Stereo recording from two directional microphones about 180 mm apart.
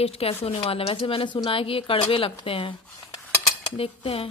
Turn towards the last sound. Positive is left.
turn(degrees=30)  # may be behind; listen again after turning